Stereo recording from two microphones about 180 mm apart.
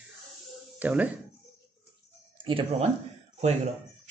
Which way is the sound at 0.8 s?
10° right (ahead or behind).